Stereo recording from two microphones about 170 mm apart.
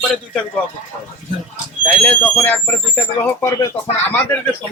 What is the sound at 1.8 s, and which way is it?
Speech, 10° left (ahead or behind).